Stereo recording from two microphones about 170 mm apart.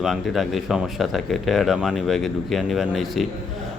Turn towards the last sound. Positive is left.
turn(degrees=0)  # may be behind; listen again after turning